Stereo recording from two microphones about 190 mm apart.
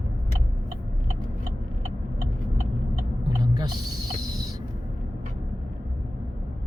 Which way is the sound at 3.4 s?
20° right (ahead or behind).